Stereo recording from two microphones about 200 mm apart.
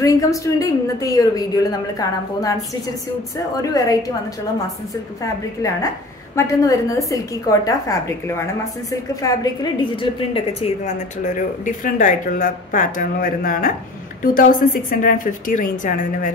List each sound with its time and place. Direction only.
0.0 s a woman's voice: 15° left (ahead or behind)
5.2 s a woman's voice: 15° left (ahead or behind); by 16.3 s 40° left (ahead or behind)